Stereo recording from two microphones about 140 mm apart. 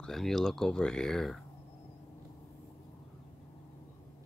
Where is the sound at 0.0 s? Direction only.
Centre (ahead or behind).